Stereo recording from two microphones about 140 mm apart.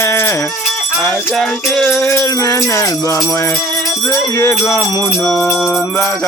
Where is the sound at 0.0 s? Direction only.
20° left (ahead or behind).